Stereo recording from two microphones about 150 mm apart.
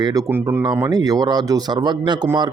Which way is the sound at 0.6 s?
25° right (ahead or behind).